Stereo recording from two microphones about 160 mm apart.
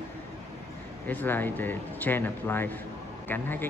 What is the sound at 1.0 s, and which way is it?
Speech, 10° left (ahead or behind).